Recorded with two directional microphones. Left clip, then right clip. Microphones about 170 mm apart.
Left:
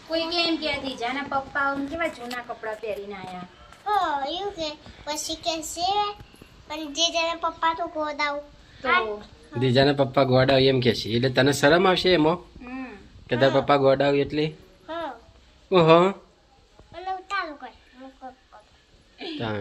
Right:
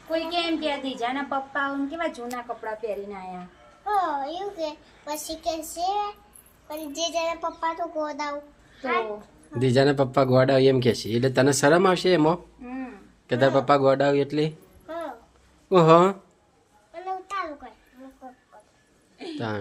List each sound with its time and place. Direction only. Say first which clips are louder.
0.1 s a woman's voice: left 1 dB; 15° right (ahead or behind)
9.5 s a woman's voice: even; 5° right (ahead or behind)
16.9 s child singing: left 2 dB; 25° right (ahead or behind)
19.2 s speech: left 1 dB; 5° right (ahead or behind)